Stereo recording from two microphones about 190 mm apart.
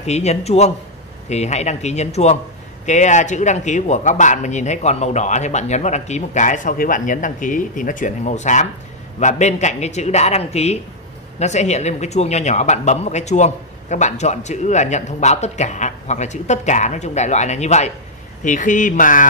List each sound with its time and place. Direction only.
0.0 s speech: 35° left (ahead or behind)